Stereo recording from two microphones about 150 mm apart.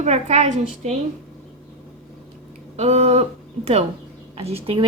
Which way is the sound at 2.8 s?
45° right (ahead or behind).